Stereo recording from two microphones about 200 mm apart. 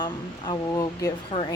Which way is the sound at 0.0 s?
20° left (ahead or behind).